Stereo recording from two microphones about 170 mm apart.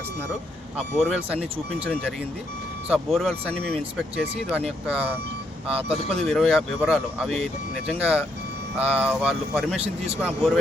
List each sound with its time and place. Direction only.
0.8 s speech: centre (ahead or behind)
2.9 s speech: centre (ahead or behind)
4.9 s speech: 5° right (ahead or behind)
9.7 s a man's voice: 40° right (ahead or behind)
10.2 s speech: centre (ahead or behind)